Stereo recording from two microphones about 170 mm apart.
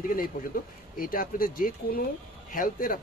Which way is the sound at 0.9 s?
55° left (ahead or behind).